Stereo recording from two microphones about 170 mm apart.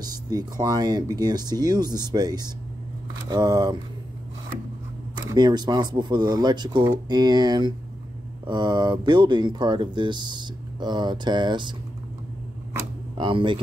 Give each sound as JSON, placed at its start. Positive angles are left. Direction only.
{"t": 0.0, "sound": "speech", "side_deg": -25}
{"t": 5.1, "sound": "speech", "side_deg": -25}
{"t": 13.2, "sound": "speech", "side_deg": -30}